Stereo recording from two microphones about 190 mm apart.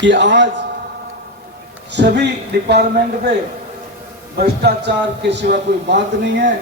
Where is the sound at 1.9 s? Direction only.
65° right (ahead or behind).